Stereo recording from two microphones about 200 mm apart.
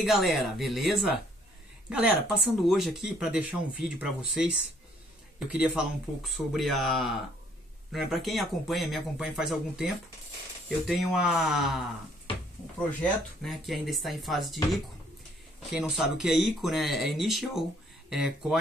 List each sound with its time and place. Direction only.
0.0 s speech: centre (ahead or behind)
13.4 s speech: centre (ahead or behind)